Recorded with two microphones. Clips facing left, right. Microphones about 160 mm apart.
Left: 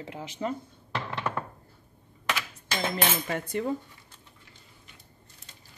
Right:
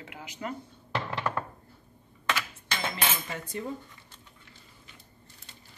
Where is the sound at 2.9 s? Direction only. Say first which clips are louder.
Left 4 dB; 65° left (ahead or behind).